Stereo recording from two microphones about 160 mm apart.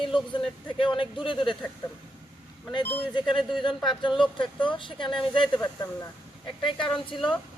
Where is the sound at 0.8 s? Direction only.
30° left (ahead or behind).